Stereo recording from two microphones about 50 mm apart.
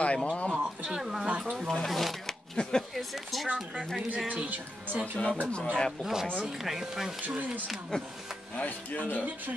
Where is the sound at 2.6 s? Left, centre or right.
Centre.